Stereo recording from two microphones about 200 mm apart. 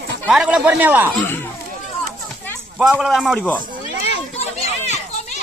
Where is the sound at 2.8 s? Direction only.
Centre (ahead or behind).